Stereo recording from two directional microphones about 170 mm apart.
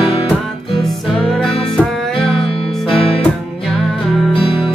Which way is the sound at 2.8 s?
35° left (ahead or behind).